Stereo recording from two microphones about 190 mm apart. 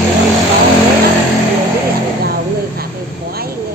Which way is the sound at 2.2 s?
55° right (ahead or behind).